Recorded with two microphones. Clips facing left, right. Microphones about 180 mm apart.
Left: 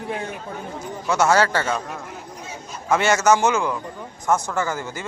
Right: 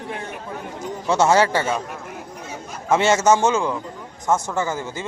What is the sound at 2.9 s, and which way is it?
A man's voice, 25° right (ahead or behind).